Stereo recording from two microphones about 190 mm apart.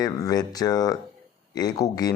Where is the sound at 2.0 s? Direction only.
20° left (ahead or behind).